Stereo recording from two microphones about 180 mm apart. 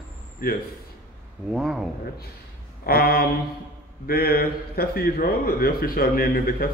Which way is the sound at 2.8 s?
60° left (ahead or behind).